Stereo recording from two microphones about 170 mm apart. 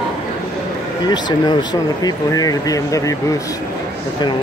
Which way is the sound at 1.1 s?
25° left (ahead or behind).